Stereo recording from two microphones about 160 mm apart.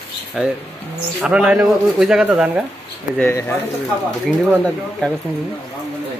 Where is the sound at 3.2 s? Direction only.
15° left (ahead or behind).